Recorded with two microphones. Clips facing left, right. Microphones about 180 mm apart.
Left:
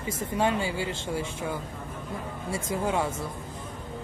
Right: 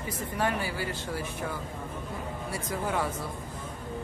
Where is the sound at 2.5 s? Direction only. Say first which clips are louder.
Left 4 dB; 25° left (ahead or behind).